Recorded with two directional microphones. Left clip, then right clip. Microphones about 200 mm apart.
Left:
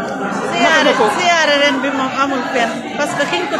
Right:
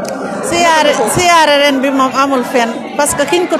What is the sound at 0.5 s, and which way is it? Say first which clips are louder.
Speech: right 3 dB; 45° right (ahead or behind).